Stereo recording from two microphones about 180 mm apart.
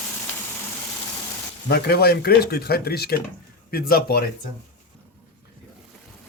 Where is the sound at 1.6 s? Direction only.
60° left (ahead or behind).